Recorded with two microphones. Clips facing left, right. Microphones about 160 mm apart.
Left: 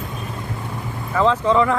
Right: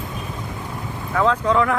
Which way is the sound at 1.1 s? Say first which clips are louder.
Left 2 dB; centre (ahead or behind).